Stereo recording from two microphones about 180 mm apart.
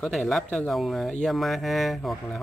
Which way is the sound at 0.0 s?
Centre (ahead or behind).